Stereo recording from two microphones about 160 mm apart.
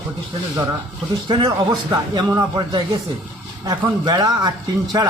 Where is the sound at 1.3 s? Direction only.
25° right (ahead or behind).